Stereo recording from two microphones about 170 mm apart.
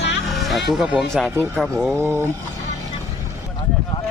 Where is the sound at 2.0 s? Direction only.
15° right (ahead or behind).